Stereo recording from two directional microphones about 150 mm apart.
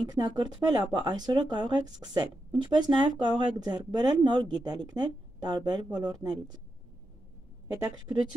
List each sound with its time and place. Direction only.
0.0 s speech: 25° right (ahead or behind)